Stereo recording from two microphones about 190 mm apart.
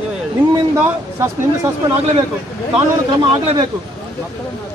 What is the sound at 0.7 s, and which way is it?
Speech, 15° right (ahead or behind).